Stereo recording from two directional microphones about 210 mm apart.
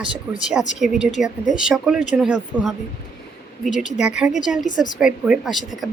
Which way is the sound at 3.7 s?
35° left (ahead or behind).